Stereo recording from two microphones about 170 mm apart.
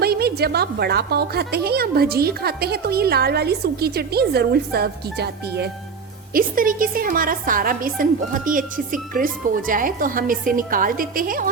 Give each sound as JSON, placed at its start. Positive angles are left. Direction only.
{"t": 0.0, "sound": "a woman's voice", "side_deg": -65}
{"t": 6.3, "sound": "a woman's voice", "side_deg": -55}